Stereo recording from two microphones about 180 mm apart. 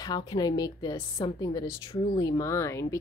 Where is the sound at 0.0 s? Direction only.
25° left (ahead or behind).